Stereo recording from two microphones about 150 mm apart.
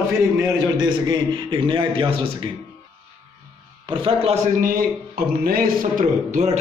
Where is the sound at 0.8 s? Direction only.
35° right (ahead or behind).